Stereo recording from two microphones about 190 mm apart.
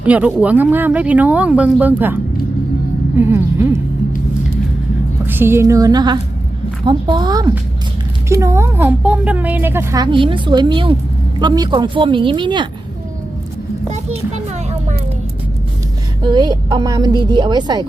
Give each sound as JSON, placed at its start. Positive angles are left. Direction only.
{"t": 0.0, "sound": "a woman's voice", "side_deg": -5}
{"t": 5.2, "sound": "a woman's voice", "side_deg": -10}
{"t": 14.3, "sound": "a sound", "side_deg": -35}
{"t": 16.2, "sound": "a woman's voice", "side_deg": -20}